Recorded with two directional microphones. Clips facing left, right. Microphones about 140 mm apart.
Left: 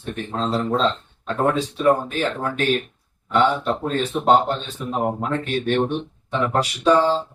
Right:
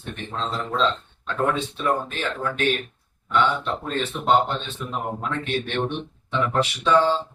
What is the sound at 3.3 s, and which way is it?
Speech, 40° left (ahead or behind).